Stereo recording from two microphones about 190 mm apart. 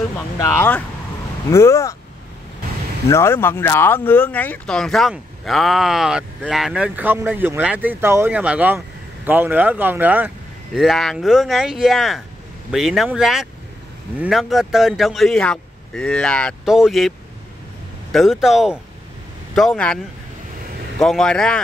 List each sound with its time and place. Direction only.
0.4 s speech: 15° left (ahead or behind)
3.1 s speech: 15° left (ahead or behind)
18.1 s speech: centre (ahead or behind)
21.0 s speech: 5° left (ahead or behind)